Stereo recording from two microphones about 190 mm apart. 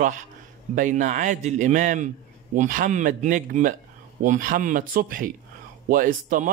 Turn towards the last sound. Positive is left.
turn(degrees=-45)  # may be behind; listen again after turning